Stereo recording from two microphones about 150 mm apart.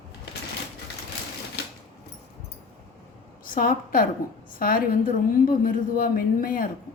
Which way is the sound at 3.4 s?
70° left (ahead or behind).